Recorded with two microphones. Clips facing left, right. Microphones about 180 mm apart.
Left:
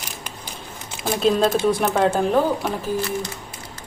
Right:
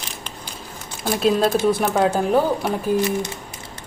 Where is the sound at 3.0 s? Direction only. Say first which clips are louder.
Right 4 dB; 20° right (ahead or behind).